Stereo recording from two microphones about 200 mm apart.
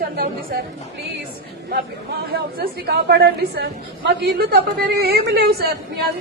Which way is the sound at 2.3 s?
50° right (ahead or behind).